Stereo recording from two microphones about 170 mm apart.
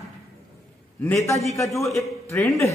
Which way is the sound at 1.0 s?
15° left (ahead or behind).